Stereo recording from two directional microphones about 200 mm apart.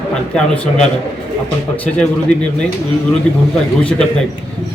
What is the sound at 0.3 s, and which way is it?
A man's voice, 5° left (ahead or behind).